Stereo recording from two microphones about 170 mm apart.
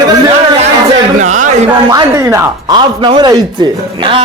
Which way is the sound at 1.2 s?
45° right (ahead or behind).